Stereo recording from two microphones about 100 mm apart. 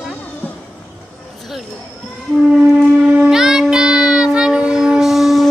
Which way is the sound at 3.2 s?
5° right (ahead or behind).